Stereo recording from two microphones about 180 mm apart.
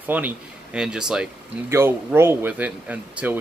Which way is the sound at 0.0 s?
10° right (ahead or behind).